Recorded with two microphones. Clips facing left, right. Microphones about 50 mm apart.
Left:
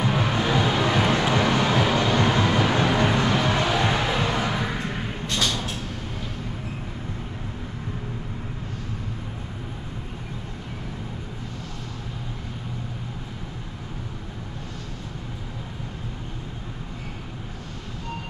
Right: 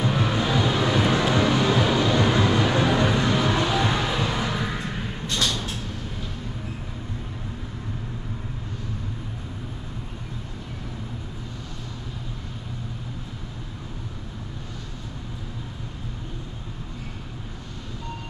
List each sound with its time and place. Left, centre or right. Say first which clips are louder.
0.0 s vehicle: even; centre